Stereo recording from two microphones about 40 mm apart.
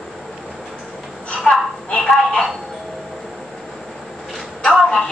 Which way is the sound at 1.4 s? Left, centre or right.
Centre.